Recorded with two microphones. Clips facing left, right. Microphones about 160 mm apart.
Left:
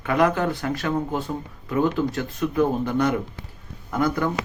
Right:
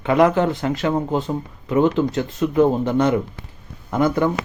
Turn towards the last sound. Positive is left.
turn(degrees=-25)  # may be behind; listen again after turning